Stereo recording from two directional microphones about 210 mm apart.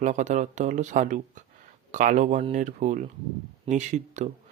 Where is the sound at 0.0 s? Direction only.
35° right (ahead or behind).